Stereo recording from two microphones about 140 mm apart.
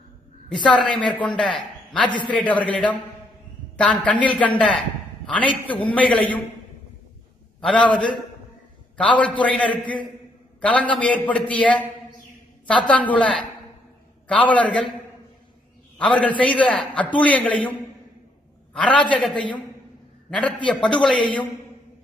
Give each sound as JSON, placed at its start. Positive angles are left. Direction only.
{"t": 0.7, "sound": "a man's voice", "side_deg": 10}
{"t": 2.0, "sound": "a man's voice", "side_deg": 35}
{"t": 2.3, "sound": "a man's voice", "side_deg": 10}
{"t": 7.6, "sound": "a man's voice", "side_deg": 10}
{"t": 16.0, "sound": "a man's voice", "side_deg": 10}
{"t": 18.7, "sound": "a man's voice", "side_deg": 10}
{"t": 21.2, "sound": "a man's voice", "side_deg": 35}